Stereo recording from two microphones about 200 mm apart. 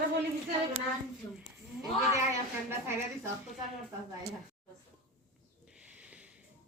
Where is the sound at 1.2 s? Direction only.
20° left (ahead or behind).